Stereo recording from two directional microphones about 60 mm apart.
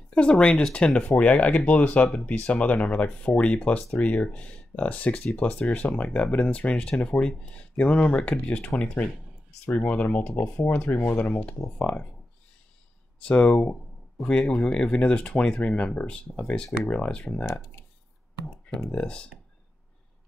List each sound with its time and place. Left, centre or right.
0.1 s speech: centre
13.2 s speech: centre
17.5 s speech: left
18.9 s speech: centre